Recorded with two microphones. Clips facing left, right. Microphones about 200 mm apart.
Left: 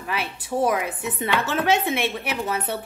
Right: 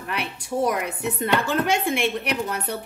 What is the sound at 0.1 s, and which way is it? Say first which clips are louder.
Speech: left 1 dB; centre (ahead or behind).